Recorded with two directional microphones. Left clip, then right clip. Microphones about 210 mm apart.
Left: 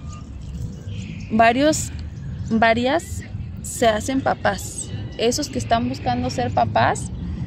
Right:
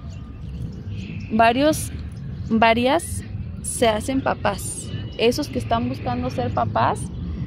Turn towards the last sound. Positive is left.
turn(degrees=0)  # may be behind; listen again after turning